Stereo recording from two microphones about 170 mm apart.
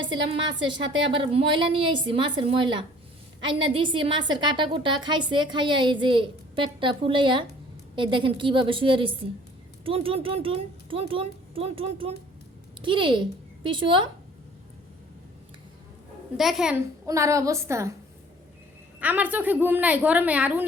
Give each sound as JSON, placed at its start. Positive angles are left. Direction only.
{"t": 0.0, "sound": "a woman's voice", "side_deg": -30}
{"t": 16.4, "sound": "a woman's voice", "side_deg": 0}
{"t": 17.1, "sound": "a woman's voice", "side_deg": -20}
{"t": 18.9, "sound": "a woman's voice", "side_deg": -10}